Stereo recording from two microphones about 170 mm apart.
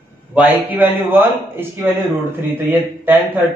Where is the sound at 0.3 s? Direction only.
10° right (ahead or behind).